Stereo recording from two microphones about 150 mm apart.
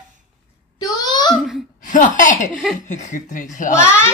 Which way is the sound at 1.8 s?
60° left (ahead or behind).